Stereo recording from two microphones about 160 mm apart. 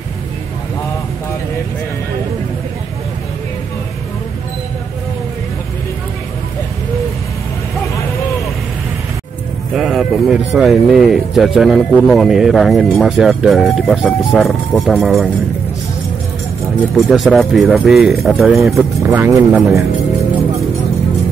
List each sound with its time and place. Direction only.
9.8 s speech: centre (ahead or behind)
16.9 s speech: centre (ahead or behind)
19.0 s speech: 15° right (ahead or behind)